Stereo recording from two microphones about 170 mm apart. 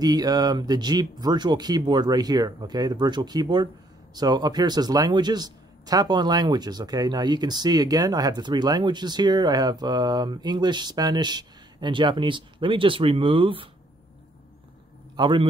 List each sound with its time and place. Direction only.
0.0 s speech: 20° right (ahead or behind)
15.1 s a man's voice: 30° right (ahead or behind)